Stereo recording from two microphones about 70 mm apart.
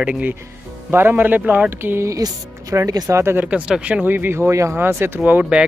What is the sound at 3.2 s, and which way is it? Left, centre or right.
Speech, right.